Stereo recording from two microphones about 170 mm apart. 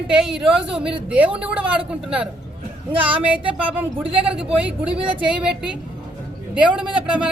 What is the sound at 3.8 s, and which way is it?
Speech, 10° right (ahead or behind).